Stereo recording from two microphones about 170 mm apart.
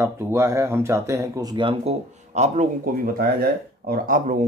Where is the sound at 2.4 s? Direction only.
45° right (ahead or behind).